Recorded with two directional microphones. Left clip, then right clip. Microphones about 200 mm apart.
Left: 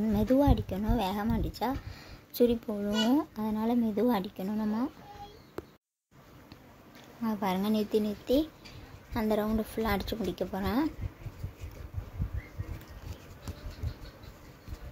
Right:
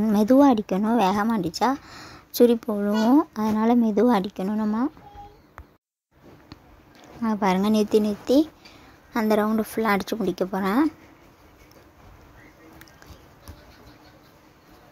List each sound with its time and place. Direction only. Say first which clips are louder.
0.0 s speech: right 9 dB; 25° right (ahead or behind)
7.2 s a woman's voice: right 9 dB; 30° right (ahead or behind)